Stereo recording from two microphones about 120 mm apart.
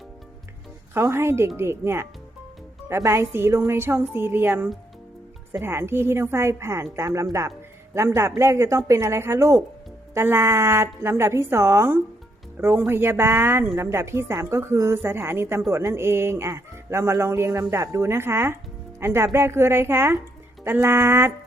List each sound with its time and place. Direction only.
0.9 s a woman's voice: 20° right (ahead or behind)